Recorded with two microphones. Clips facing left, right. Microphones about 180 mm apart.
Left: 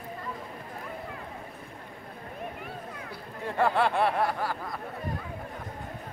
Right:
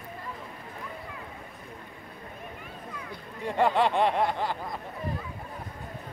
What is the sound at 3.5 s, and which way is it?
Speech, 20° right (ahead or behind).